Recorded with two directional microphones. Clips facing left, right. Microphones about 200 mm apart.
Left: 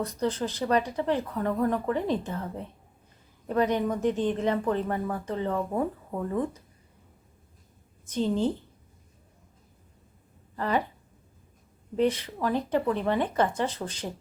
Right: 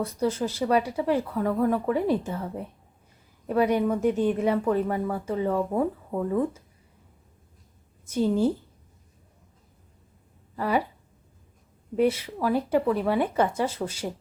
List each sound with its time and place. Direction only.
0.0 s speech: 10° right (ahead or behind)
8.0 s speech: 10° right (ahead or behind)
10.5 s speech: 10° right (ahead or behind)
11.9 s speech: 10° right (ahead or behind)